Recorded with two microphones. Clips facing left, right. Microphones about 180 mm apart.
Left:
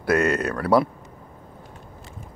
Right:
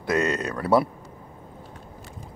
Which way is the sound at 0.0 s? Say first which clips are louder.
Left 3 dB; 20° right (ahead or behind).